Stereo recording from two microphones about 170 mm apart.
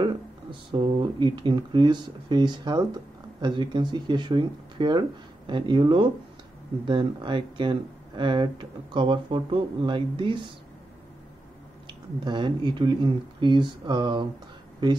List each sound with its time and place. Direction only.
0.0 s speech: 30° right (ahead or behind)
12.3 s speech: 25° right (ahead or behind)